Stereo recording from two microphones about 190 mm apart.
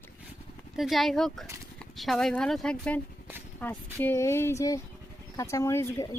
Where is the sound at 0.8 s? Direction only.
Centre (ahead or behind).